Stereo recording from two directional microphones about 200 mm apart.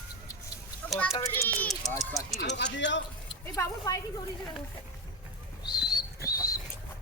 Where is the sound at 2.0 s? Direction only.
15° left (ahead or behind).